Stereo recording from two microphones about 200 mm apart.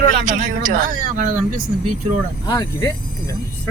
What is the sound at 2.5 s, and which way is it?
Speech, 15° left (ahead or behind).